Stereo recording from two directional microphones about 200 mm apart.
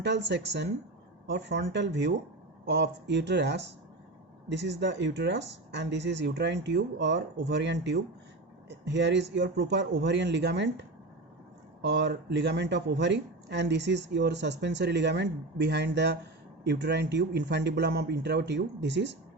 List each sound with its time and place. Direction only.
0.0 s speech: 60° right (ahead or behind)